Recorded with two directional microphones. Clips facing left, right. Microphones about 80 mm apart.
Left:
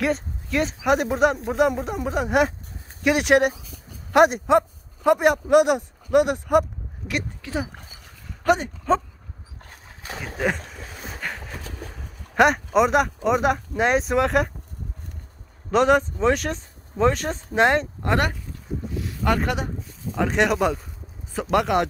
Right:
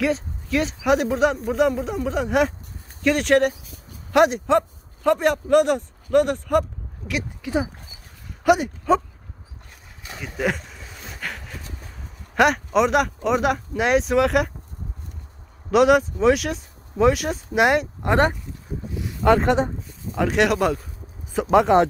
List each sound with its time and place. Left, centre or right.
0.0 s speech: centre
7.4 s speech: centre
9.7 s a sound: left
10.4 s a sound: centre
12.4 s speech: centre
15.7 s speech: centre; by 19.7 s right
19.9 s speech: centre
21.3 s speech: centre